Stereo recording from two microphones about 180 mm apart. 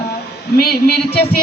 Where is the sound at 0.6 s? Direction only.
60° left (ahead or behind).